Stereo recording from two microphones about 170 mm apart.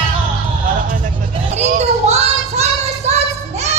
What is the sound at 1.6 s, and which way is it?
Children playing, 40° right (ahead or behind).